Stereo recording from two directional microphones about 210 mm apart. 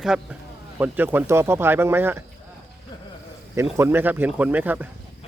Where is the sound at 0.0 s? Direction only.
5° right (ahead or behind).